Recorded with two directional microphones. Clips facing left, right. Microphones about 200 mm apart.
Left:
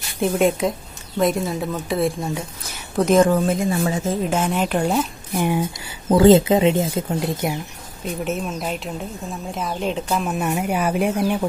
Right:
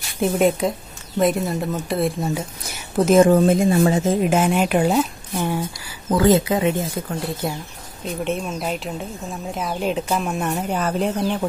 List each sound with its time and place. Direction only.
0.2 s a woman's voice: centre (ahead or behind)
3.3 s speech: 35° right (ahead or behind)
4.2 s speech: 10° right (ahead or behind)
5.3 s speech: 15° left (ahead or behind)
6.0 s speech: 25° left (ahead or behind)
8.2 s a woman's voice: centre (ahead or behind)